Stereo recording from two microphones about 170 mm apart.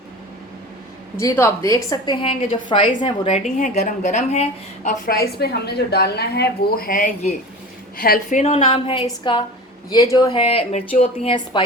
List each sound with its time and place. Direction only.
1.2 s a woman's voice: 20° left (ahead or behind); by 4.9 s 40° left (ahead or behind)
5.0 s a woman's voice: 65° left (ahead or behind); by 7.3 s 45° left (ahead or behind)
7.9 s a woman's voice: 60° left (ahead or behind); by 11.6 s 35° left (ahead or behind)